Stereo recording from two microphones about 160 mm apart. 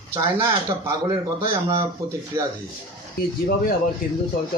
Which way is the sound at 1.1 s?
25° right (ahead or behind).